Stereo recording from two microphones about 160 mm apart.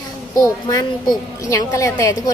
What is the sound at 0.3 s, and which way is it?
A woman's voice, 20° left (ahead or behind).